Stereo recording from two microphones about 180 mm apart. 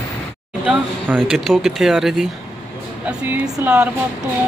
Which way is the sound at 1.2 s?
Centre (ahead or behind).